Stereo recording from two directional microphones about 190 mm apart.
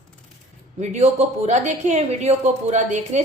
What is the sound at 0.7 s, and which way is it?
A woman's voice, 35° right (ahead or behind).